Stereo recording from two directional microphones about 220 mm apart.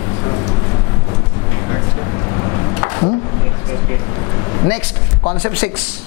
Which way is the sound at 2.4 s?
20° left (ahead or behind).